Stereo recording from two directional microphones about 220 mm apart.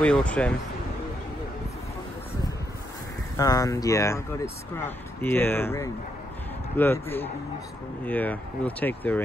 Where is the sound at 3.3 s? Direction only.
15° left (ahead or behind).